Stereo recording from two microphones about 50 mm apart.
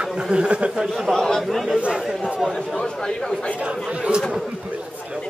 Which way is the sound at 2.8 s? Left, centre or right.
Centre.